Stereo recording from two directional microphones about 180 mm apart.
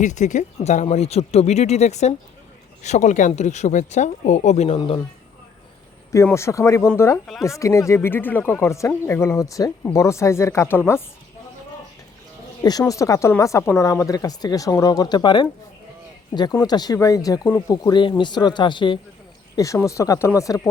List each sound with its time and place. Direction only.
0.0 s speech: 40° left (ahead or behind)
6.2 s speech: 15° left (ahead or behind)
12.6 s speech: 20° left (ahead or behind)